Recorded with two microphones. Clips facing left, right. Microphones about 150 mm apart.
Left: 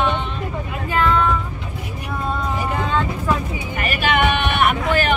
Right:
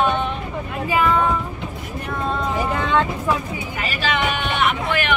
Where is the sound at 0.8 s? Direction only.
10° right (ahead or behind).